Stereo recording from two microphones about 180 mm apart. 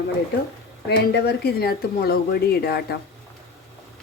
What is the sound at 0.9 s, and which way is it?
Speech, 65° left (ahead or behind).